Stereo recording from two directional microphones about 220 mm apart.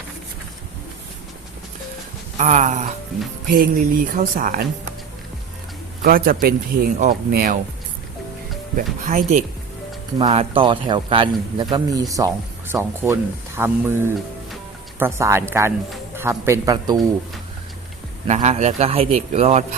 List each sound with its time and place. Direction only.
2.4 s speech: 35° right (ahead or behind)
6.0 s speech: 40° right (ahead or behind)
8.7 s a man's voice: 35° right (ahead or behind); by 17.0 s 20° right (ahead or behind)
18.3 s a man's voice: 30° right (ahead or behind)